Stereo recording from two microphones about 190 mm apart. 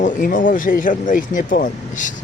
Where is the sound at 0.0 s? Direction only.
45° left (ahead or behind).